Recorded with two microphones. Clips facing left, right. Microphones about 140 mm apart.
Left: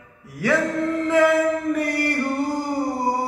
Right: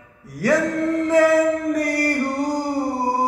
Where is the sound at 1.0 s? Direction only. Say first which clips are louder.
Right 2 dB; 40° right (ahead or behind).